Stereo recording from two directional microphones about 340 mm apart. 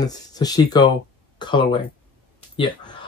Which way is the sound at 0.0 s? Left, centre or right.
Centre.